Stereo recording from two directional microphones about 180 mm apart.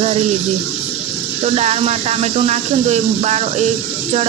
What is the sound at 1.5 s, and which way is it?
Speech, 35° right (ahead or behind).